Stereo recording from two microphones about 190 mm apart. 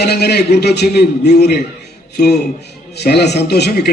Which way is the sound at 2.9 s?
60° left (ahead or behind).